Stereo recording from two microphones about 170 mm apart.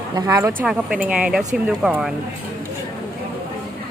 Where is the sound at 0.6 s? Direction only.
5° right (ahead or behind).